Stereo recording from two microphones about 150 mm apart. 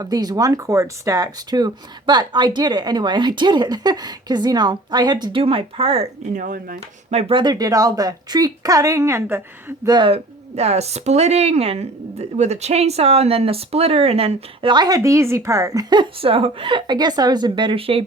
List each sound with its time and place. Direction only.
0.0 s speech: 25° right (ahead or behind)
6.3 s speech: 65° right (ahead or behind)
6.7 s speech: 45° right (ahead or behind); by 9.9 s 15° right (ahead or behind)
9.9 s speech: 35° right (ahead or behind)